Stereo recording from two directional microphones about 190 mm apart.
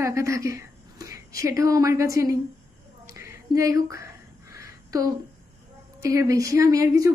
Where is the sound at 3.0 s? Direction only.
15° right (ahead or behind).